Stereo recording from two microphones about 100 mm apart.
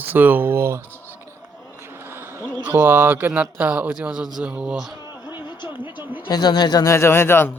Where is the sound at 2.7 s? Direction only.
20° right (ahead or behind).